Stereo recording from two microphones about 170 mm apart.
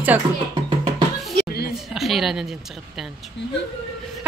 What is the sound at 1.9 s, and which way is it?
Speech, centre (ahead or behind).